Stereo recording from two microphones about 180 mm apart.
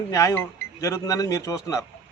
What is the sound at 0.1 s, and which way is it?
A man's voice, 15° left (ahead or behind).